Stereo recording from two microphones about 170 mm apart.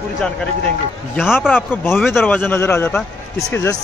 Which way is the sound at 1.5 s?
10° left (ahead or behind).